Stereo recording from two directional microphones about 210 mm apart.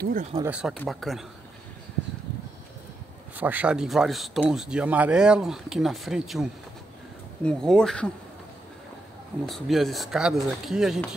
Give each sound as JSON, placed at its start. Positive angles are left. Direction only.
{"t": 0.0, "sound": "speech", "side_deg": -40}
{"t": 0.5, "sound": "speech", "side_deg": -5}
{"t": 3.3, "sound": "speech", "side_deg": -10}
{"t": 7.4, "sound": "speech", "side_deg": 5}
{"t": 9.5, "sound": "speech", "side_deg": 0}